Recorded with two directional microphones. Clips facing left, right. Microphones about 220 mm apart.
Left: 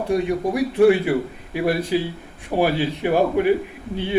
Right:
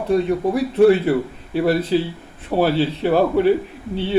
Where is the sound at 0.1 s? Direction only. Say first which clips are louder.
Right 3 dB; 15° left (ahead or behind).